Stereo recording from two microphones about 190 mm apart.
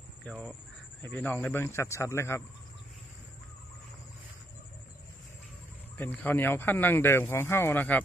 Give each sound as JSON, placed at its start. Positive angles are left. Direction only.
{"t": 0.2, "sound": "speech", "side_deg": 5}
{"t": 5.9, "sound": "speech", "side_deg": 10}